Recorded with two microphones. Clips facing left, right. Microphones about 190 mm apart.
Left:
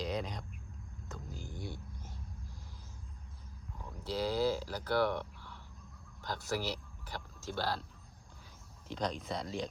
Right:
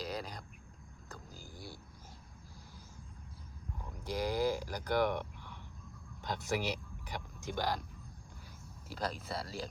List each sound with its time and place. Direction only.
0.0 s a sound: centre (ahead or behind)
4.0 s speech: 15° right (ahead or behind)
8.9 s speech: 5° right (ahead or behind)